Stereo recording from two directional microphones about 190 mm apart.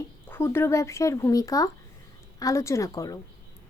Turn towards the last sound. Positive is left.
turn(degrees=20)  # may be behind; listen again after turning